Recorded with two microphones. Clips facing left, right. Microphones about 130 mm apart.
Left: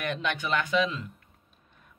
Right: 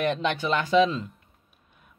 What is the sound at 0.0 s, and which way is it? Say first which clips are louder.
Speech: right 5 dB; 30° right (ahead or behind).